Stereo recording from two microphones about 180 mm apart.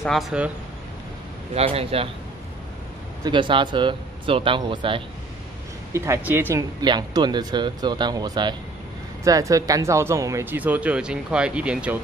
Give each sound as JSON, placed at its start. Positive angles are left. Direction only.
{"t": 0.0, "sound": "speech", "side_deg": 0}
{"t": 1.5, "sound": "a man's voice", "side_deg": -35}
{"t": 3.3, "sound": "speech", "side_deg": -25}
{"t": 5.9, "sound": "speech", "side_deg": -15}
{"t": 6.8, "sound": "speech", "side_deg": -25}